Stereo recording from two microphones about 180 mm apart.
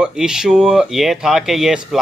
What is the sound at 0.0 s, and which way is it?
Speech, 5° right (ahead or behind).